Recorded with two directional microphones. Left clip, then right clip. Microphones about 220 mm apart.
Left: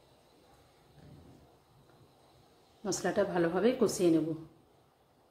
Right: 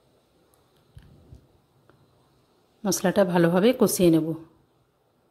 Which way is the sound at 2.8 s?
45° right (ahead or behind).